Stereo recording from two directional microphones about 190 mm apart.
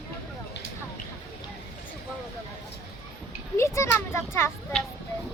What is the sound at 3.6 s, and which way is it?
Speech, 15° left (ahead or behind).